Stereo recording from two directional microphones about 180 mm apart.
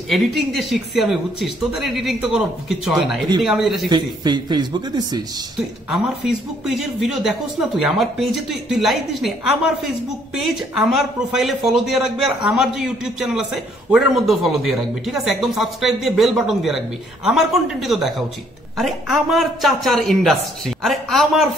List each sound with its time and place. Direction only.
0.1 s a man's voice: centre (ahead or behind)
3.9 s a man's voice: 25° right (ahead or behind)
5.9 s a man's voice: centre (ahead or behind)